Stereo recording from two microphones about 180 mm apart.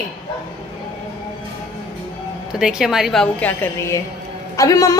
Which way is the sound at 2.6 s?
Centre (ahead or behind).